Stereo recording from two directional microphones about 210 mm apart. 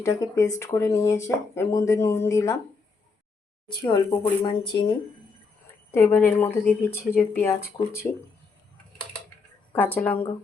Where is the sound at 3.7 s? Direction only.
20° left (ahead or behind).